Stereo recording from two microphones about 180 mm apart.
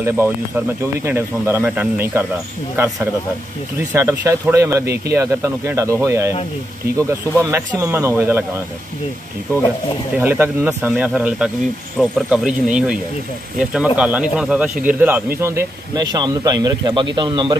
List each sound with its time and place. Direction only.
1.0 s speech: 15° right (ahead or behind)
3.9 s speech: 15° right (ahead or behind)
10.1 s speech: 10° right (ahead or behind)